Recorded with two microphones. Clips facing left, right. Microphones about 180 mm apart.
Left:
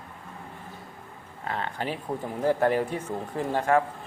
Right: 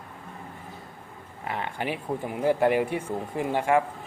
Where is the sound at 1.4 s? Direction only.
15° right (ahead or behind).